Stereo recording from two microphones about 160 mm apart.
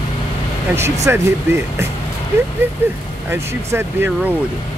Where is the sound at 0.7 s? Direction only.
15° right (ahead or behind).